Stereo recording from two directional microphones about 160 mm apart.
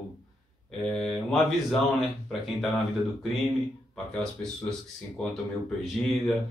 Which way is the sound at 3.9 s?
5° left (ahead or behind).